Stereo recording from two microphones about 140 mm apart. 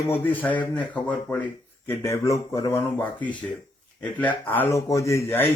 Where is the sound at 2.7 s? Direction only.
15° left (ahead or behind).